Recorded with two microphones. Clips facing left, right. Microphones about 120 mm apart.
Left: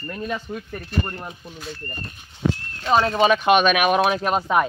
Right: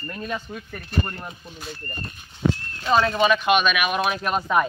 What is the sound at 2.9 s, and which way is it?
Speech, 20° left (ahead or behind).